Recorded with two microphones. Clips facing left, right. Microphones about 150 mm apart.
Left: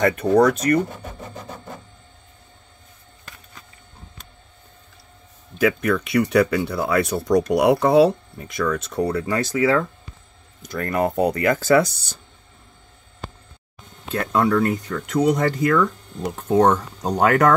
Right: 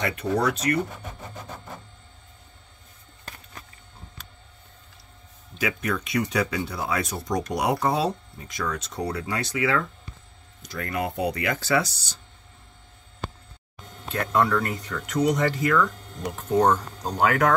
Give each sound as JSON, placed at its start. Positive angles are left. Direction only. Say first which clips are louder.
{"t": 0.0, "sound": "speech", "louder": "left 8 dB", "side_deg": 50}
{"t": 5.6, "sound": "speech", "louder": "left 8 dB", "side_deg": 55}
{"t": 10.6, "sound": "speech", "louder": "left 7 dB", "side_deg": 50}
{"t": 14.1, "sound": "speech", "louder": "left 4 dB", "side_deg": 40}